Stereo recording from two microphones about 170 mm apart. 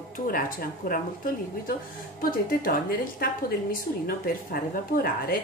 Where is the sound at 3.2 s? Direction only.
60° left (ahead or behind).